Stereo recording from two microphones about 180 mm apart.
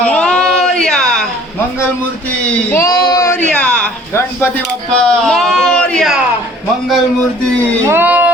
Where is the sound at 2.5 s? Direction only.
15° left (ahead or behind).